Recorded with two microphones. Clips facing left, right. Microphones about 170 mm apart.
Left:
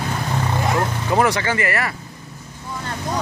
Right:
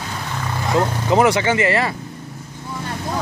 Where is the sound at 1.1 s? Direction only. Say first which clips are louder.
Right 3 dB; 20° right (ahead or behind).